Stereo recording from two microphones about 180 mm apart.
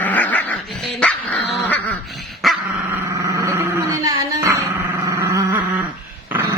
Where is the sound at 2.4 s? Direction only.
Centre (ahead or behind).